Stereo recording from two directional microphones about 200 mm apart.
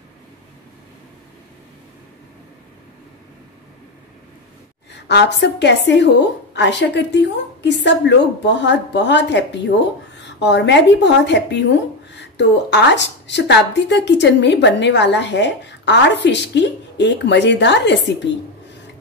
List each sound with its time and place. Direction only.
5.0 s speech: 60° left (ahead or behind)